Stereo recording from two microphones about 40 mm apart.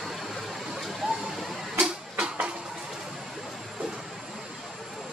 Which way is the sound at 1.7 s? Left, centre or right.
Right.